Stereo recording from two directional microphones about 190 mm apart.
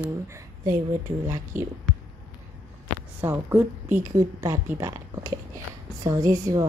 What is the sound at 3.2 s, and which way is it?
A woman's voice, 10° right (ahead or behind).